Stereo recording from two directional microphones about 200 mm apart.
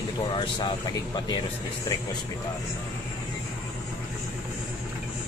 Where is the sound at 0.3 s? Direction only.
25° left (ahead or behind).